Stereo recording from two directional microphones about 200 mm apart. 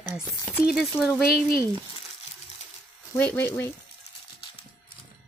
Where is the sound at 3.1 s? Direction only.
10° left (ahead or behind).